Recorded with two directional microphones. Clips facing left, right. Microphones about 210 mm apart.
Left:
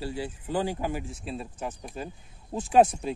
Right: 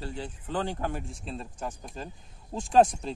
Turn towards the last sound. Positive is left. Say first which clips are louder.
# left 1 dB
turn(degrees=5)  # may be behind; listen again after turning